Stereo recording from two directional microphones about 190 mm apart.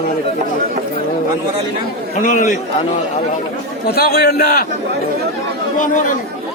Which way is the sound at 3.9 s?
55° left (ahead or behind).